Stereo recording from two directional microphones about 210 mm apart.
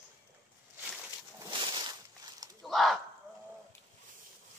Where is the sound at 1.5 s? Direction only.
20° right (ahead or behind).